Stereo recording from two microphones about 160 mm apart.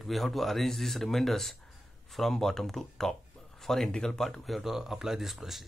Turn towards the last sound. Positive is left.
turn(degrees=0)  # may be behind; listen again after turning